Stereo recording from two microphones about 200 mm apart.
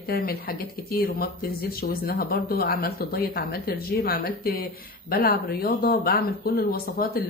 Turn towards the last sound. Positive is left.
turn(degrees=50)  # may be behind; listen again after turning